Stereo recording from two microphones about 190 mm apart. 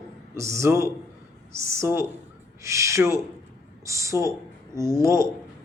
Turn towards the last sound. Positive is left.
turn(degrees=-15)  # may be behind; listen again after turning